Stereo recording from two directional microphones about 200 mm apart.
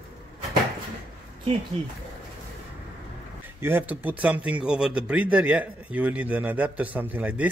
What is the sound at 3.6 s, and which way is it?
Speech, 10° right (ahead or behind).